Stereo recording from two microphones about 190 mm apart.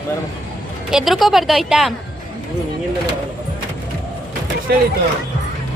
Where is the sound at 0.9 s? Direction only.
Centre (ahead or behind).